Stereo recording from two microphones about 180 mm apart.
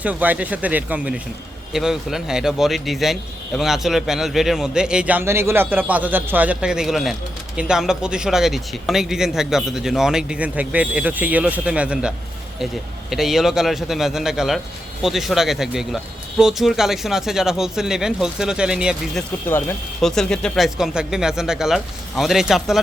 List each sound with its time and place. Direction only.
0.0 s a man's voice: 10° right (ahead or behind)
19.5 s a man's voice: 10° left (ahead or behind)